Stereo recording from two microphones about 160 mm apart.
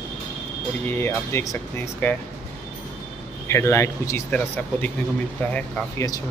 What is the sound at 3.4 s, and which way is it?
Speech, 15° left (ahead or behind).